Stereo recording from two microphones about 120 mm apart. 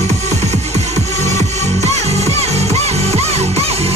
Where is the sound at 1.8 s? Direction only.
65° right (ahead or behind).